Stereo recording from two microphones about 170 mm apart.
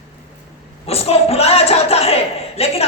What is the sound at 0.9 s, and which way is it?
A woman's voice, 35° left (ahead or behind).